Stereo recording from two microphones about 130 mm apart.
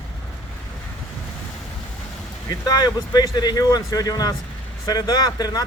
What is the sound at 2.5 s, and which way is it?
Speech, 30° left (ahead or behind).